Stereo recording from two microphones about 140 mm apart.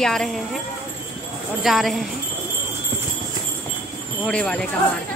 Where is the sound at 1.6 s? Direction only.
Centre (ahead or behind).